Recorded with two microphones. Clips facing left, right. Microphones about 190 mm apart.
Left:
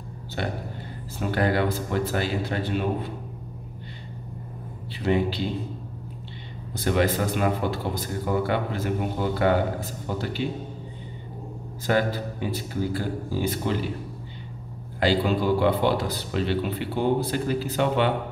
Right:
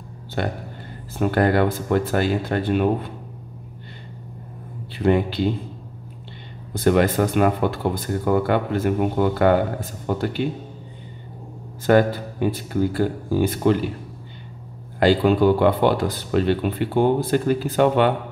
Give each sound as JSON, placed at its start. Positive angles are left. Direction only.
{"t": 0.4, "sound": "speech", "side_deg": -50}
{"t": 4.9, "sound": "speech", "side_deg": -55}
{"t": 6.7, "sound": "speech", "side_deg": -55}
{"t": 11.8, "sound": "speech", "side_deg": -55}
{"t": 15.0, "sound": "speech", "side_deg": -55}